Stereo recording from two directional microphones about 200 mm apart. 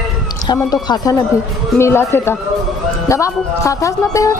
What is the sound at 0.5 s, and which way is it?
Speech, 20° left (ahead or behind).